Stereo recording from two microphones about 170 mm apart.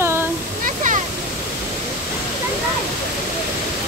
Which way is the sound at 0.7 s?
50° right (ahead or behind).